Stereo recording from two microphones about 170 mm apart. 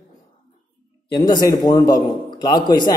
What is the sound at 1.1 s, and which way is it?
A man's voice, 25° left (ahead or behind).